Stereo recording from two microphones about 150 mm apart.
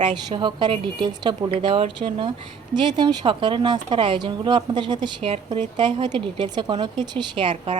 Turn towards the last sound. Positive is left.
turn(degrees=-45)  # may be behind; listen again after turning